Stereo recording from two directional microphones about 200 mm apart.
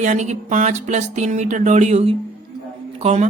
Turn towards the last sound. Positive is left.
turn(degrees=-35)  # may be behind; listen again after turning